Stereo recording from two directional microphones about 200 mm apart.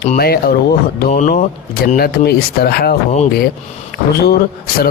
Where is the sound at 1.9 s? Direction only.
50° left (ahead or behind).